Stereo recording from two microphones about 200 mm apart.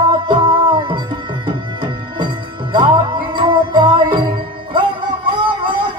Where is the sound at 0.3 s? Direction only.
25° right (ahead or behind).